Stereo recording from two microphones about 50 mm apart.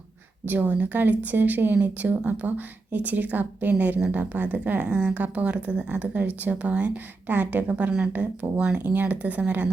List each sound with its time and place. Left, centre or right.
0.4 s speech: right
7.3 s speech: right
8.8 s speech: right